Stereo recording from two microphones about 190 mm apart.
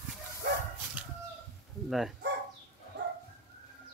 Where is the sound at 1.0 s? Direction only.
10° right (ahead or behind).